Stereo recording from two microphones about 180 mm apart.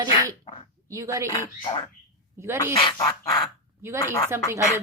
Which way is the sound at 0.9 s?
15° right (ahead or behind).